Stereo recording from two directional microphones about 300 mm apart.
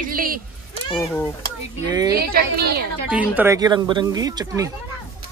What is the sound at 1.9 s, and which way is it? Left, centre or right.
Speech, centre.